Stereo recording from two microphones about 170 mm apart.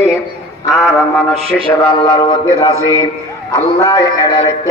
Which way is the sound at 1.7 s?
15° left (ahead or behind).